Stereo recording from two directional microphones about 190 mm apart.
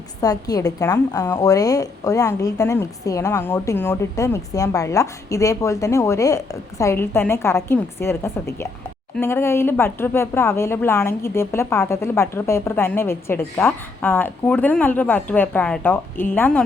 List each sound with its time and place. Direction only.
0.2 s a woman's voice: 20° left (ahead or behind)